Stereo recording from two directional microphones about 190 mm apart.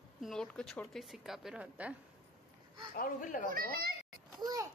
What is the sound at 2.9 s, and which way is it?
Speech, 45° left (ahead or behind).